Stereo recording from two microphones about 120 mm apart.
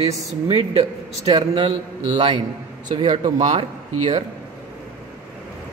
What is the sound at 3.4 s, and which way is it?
Speech, 65° right (ahead or behind).